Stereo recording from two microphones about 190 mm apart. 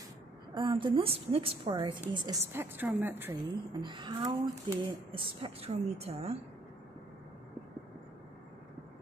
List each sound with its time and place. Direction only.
0.6 s speech: 25° right (ahead or behind)
2.4 s a woman's voice: 10° right (ahead or behind)
3.4 s speech: 25° right (ahead or behind)